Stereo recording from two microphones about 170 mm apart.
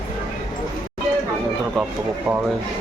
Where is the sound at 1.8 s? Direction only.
5° left (ahead or behind).